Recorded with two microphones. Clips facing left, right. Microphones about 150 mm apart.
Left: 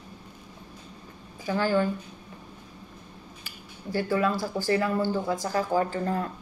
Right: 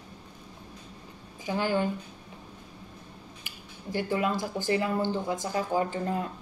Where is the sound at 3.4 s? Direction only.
20° right (ahead or behind).